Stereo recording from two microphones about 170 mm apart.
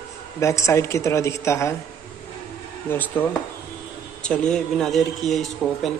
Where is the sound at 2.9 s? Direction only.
10° left (ahead or behind).